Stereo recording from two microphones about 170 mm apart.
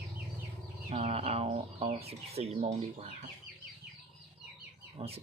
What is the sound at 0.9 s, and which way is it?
Speech, 35° right (ahead or behind).